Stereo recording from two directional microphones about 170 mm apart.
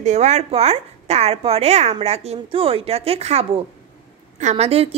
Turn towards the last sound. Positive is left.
turn(degrees=-35)  # may be behind; listen again after turning